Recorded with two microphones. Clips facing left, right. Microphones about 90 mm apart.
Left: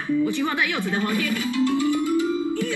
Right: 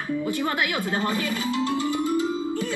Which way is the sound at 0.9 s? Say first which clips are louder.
Left 1 dB; 25° right (ahead or behind).